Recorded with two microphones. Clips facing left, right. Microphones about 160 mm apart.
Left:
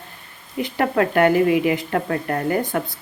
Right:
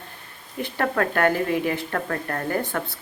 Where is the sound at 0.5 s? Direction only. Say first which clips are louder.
Left 4 dB; 15° left (ahead or behind).